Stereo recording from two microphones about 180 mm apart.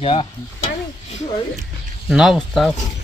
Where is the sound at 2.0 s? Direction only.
Centre (ahead or behind).